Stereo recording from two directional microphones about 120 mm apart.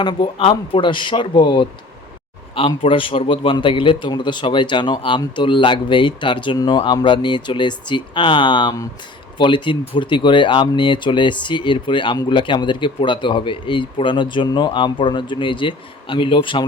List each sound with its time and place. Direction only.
0.0 s speech: 45° left (ahead or behind)
2.6 s a man's voice: 45° left (ahead or behind)